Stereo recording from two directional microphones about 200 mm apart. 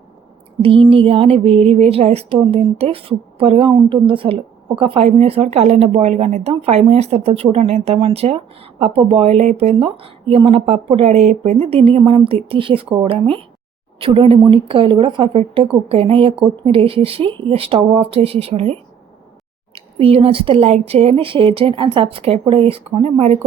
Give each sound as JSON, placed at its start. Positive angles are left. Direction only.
{"t": 0.6, "sound": "a woman's voice", "side_deg": -25}